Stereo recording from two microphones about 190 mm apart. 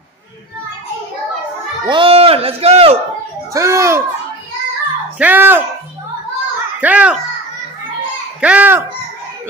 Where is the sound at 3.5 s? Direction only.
15° right (ahead or behind).